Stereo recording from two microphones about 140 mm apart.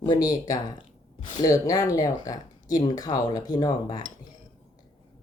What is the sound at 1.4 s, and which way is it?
Speech, 25° left (ahead or behind).